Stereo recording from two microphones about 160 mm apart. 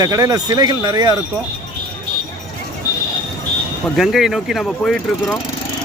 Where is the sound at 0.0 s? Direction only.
20° right (ahead or behind).